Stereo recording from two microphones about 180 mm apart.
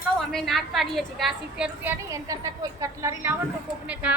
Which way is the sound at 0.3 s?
Centre (ahead or behind).